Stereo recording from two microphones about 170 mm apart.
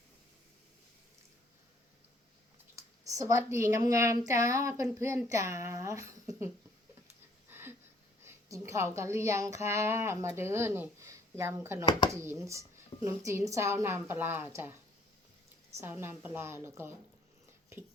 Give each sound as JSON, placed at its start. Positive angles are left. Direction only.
{"t": 2.7, "sound": "a woman's voice", "side_deg": -20}
{"t": 7.5, "sound": "a sound", "side_deg": -10}
{"t": 8.2, "sound": "a woman's voice", "side_deg": -20}
{"t": 15.8, "sound": "a woman's voice", "side_deg": -15}